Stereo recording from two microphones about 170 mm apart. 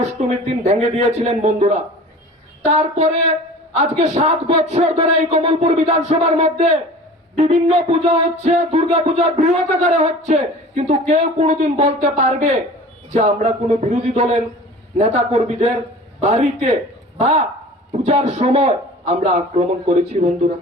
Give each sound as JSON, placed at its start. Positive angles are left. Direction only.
{"t": 0.0, "sound": "music", "side_deg": -40}